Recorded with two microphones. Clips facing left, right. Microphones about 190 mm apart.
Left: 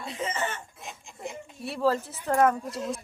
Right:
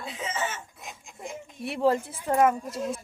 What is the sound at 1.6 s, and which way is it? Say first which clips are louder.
Speech: right 2 dB; 20° right (ahead or behind).